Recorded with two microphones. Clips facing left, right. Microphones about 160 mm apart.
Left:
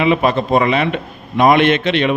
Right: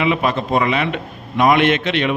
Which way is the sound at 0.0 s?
35° left (ahead or behind).